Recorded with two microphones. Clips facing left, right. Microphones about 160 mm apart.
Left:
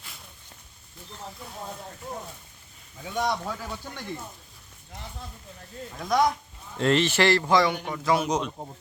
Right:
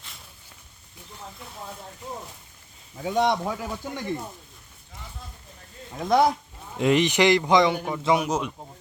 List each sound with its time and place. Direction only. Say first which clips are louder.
3.1 s speech: right 5 dB; 25° right (ahead or behind)
5.9 s speech: right 3 dB; 30° right (ahead or behind)
6.7 s speech: right 2 dB; 15° right (ahead or behind)
8.3 s speech: even; 5° right (ahead or behind)